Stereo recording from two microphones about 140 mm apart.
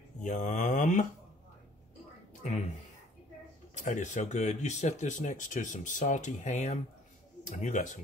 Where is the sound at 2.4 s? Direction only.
60° left (ahead or behind).